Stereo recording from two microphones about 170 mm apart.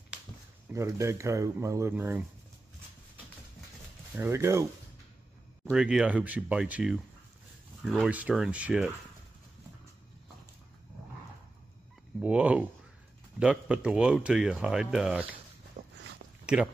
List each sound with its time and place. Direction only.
0.7 s speech: 15° right (ahead or behind)
4.1 s speech: 15° right (ahead or behind)
5.7 s speech: 5° right (ahead or behind)
12.2 s speech: 10° right (ahead or behind)
15.8 s a sound: 45° right (ahead or behind)